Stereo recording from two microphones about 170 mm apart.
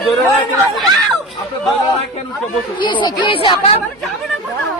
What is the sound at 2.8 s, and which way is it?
Speech, 30° left (ahead or behind).